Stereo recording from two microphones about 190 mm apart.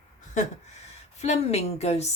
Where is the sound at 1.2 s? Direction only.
35° left (ahead or behind).